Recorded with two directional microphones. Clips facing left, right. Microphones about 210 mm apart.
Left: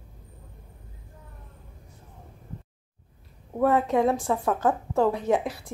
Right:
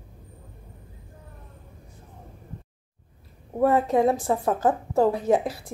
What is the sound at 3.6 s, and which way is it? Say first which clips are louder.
A woman's voice: right 2 dB; 35° right (ahead or behind).